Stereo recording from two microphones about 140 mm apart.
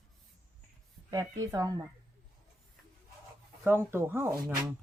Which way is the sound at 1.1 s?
25° right (ahead or behind).